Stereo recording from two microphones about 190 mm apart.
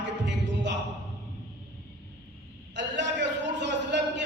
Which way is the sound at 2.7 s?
70° right (ahead or behind).